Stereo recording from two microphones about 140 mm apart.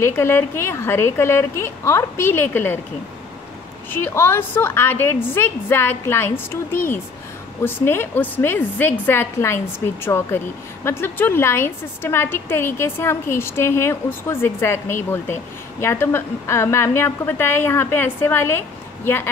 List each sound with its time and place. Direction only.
0.0 s a woman's voice: 15° left (ahead or behind)
3.9 s a woman's voice: 15° left (ahead or behind)